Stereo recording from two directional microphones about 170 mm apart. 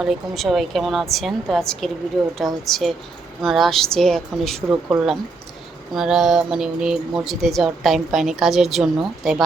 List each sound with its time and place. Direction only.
0.0 s speech: centre (ahead or behind)